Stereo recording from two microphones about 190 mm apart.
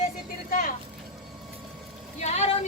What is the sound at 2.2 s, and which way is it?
Speech, 35° left (ahead or behind).